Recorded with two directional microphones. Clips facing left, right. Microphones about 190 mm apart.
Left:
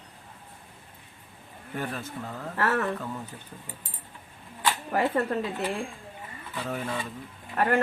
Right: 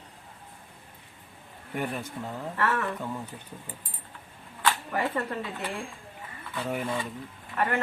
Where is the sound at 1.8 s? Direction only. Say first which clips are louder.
Right 1 dB; 15° right (ahead or behind).